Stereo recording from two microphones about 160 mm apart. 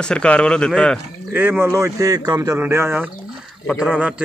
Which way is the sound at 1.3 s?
10° right (ahead or behind).